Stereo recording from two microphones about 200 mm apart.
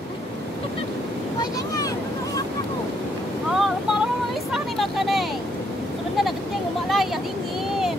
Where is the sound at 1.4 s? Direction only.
15° left (ahead or behind).